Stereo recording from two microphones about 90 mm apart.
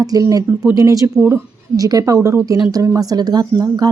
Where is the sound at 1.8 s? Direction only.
45° right (ahead or behind).